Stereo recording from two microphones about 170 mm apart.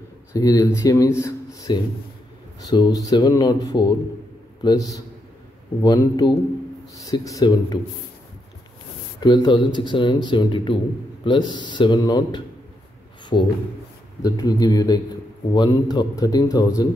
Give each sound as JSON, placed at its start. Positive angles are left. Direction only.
{"t": 0.3, "sound": "a man's voice", "side_deg": 20}
{"t": 9.2, "sound": "a man's voice", "side_deg": 25}